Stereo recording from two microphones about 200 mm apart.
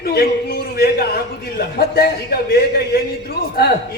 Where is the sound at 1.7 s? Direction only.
50° left (ahead or behind).